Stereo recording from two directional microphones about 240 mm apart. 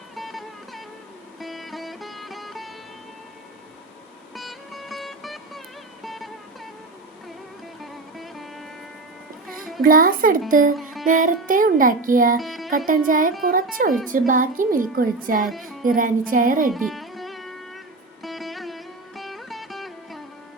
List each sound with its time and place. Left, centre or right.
0.2 s music: centre
4.4 s music: centre
7.8 s music: centre
9.8 s a woman's voice: right
12.4 s music: centre
12.7 s a woman's voice: right
15.4 s speech: centre
15.8 s a woman's voice: right
16.7 s music: centre